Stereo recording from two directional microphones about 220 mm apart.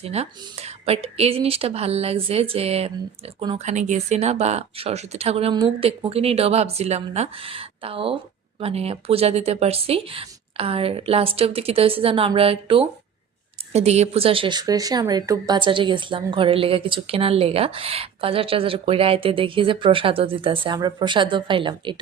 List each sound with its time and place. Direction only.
0.0 s speech: 30° right (ahead or behind)